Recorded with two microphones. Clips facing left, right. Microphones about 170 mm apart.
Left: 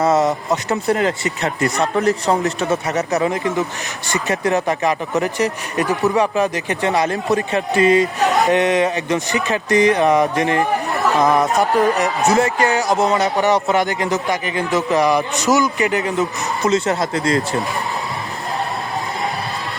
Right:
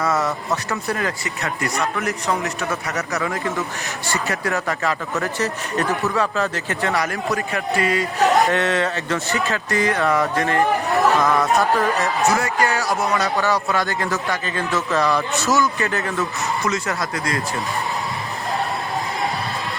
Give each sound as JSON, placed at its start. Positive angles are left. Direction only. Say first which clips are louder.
{"t": 0.0, "sound": "a man's voice", "louder": "left 6 dB", "side_deg": 25}